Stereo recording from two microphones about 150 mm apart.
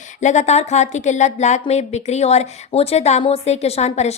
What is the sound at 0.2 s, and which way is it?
Speech, 50° left (ahead or behind).